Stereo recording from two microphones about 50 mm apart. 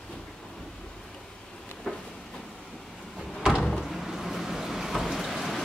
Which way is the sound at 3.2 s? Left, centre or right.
Centre.